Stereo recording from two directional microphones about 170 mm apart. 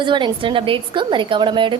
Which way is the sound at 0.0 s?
30° right (ahead or behind).